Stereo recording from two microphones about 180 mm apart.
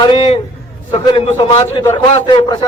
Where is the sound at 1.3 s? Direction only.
15° left (ahead or behind).